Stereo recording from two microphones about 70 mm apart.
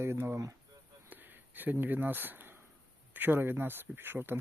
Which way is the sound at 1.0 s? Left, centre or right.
Right.